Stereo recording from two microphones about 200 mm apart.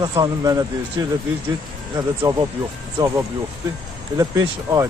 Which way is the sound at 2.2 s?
20° right (ahead or behind).